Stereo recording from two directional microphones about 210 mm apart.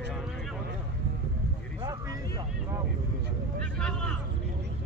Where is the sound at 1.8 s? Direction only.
20° right (ahead or behind).